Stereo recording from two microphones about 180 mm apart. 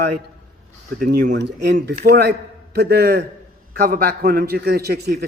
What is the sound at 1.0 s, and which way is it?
Speech, 50° right (ahead or behind).